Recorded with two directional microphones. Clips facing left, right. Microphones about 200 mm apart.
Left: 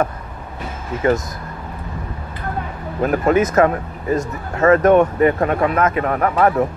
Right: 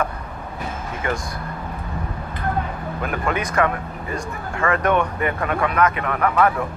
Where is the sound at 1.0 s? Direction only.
40° left (ahead or behind).